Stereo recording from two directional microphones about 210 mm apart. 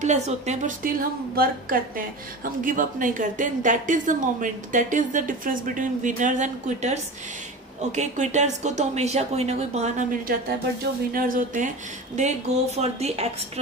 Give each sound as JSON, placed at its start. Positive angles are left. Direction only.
{"t": 0.0, "sound": "a woman's voice", "side_deg": -30}